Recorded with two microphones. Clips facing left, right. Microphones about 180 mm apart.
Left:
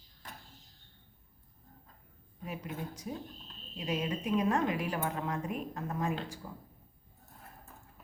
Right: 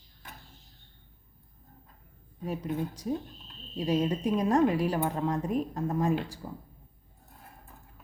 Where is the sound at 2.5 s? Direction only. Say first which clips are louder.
Right 8 dB; 30° right (ahead or behind).